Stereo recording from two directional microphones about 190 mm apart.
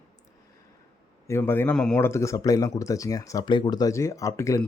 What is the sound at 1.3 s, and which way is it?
Speech, 10° left (ahead or behind).